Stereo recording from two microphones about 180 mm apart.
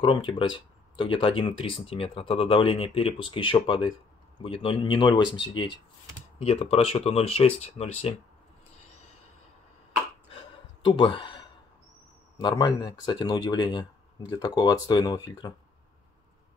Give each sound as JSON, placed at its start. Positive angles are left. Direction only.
{"t": 0.0, "sound": "speech", "side_deg": 30}
{"t": 10.8, "sound": "speech", "side_deg": 25}